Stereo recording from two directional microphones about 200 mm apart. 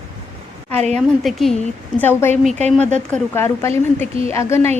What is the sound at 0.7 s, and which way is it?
Speech, 35° right (ahead or behind).